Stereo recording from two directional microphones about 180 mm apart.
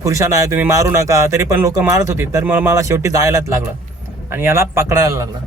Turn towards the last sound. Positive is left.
turn(degrees=-15)  # may be behind; listen again after turning